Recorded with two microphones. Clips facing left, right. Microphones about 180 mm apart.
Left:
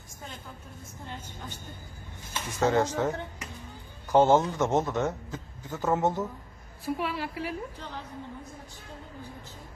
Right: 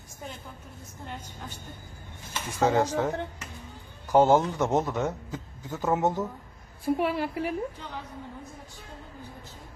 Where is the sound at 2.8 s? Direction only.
10° right (ahead or behind).